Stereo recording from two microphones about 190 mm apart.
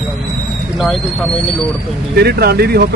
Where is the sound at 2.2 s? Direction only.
55° right (ahead or behind).